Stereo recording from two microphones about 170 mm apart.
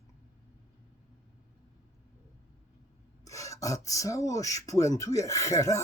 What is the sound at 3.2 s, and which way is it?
Speech, 20° left (ahead or behind).